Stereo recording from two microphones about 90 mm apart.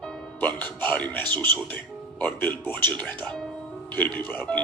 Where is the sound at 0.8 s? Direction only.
20° left (ahead or behind).